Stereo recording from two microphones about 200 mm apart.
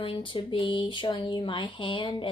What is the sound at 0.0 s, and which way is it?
Speech, 25° left (ahead or behind).